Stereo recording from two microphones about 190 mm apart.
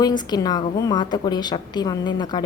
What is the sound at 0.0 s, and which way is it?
A woman's voice, 20° left (ahead or behind).